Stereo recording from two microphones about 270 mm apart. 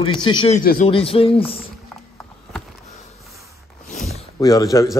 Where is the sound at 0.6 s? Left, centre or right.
Left.